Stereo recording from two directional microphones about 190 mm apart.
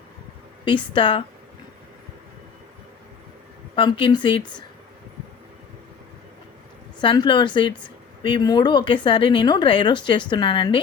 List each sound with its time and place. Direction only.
0.6 s speech: 25° left (ahead or behind)
3.8 s speech: 25° left (ahead or behind)
7.0 s speech: 25° left (ahead or behind)